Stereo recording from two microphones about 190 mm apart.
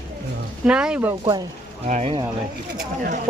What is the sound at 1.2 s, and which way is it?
Speech, 20° right (ahead or behind).